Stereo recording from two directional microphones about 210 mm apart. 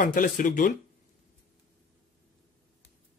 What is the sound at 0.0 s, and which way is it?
Speech, 40° left (ahead or behind).